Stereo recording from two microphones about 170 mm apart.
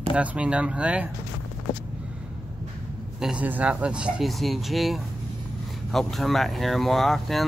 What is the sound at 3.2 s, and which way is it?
Speech, 5° right (ahead or behind).